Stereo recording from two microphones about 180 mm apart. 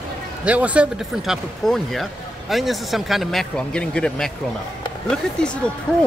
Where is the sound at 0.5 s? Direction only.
5° right (ahead or behind).